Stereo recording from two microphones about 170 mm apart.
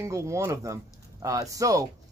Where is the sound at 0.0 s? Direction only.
15° right (ahead or behind).